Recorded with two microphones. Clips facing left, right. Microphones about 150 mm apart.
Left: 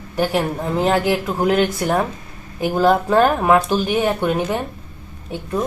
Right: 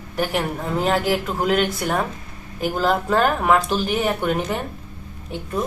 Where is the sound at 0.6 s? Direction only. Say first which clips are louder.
Left 2 dB; 10° left (ahead or behind).